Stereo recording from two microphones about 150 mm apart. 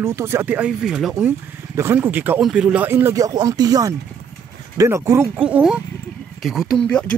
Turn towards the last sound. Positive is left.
turn(degrees=5)  # may be behind; listen again after turning